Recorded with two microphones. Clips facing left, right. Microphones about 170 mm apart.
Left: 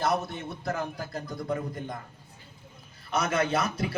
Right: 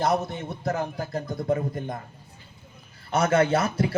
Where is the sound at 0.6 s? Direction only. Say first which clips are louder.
Right 5 dB; 45° right (ahead or behind).